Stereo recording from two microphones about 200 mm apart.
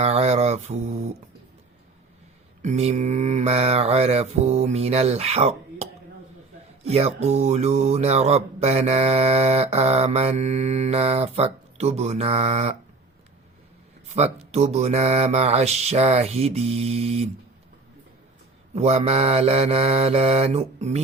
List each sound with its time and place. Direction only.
0.0 s mantra: 30° right (ahead or behind)
2.6 s mantra: 35° right (ahead or behind)
14.5 s mantra: 35° right (ahead or behind)
18.7 s mantra: 30° right (ahead or behind)